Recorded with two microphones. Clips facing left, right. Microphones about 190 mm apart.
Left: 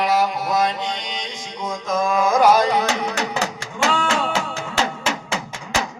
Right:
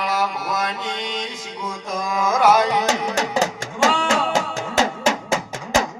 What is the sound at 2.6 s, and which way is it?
Music, 20° right (ahead or behind).